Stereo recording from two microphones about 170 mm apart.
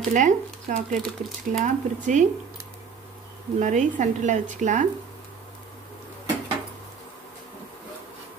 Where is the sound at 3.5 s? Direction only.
45° right (ahead or behind).